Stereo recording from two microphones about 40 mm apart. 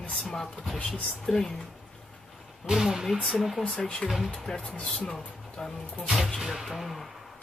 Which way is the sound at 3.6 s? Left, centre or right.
Left.